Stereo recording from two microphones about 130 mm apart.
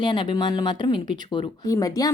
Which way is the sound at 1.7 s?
25° left (ahead or behind).